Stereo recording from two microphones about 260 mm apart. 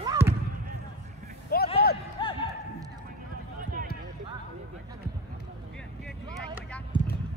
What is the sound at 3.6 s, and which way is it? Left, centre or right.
Basketball bounce, right.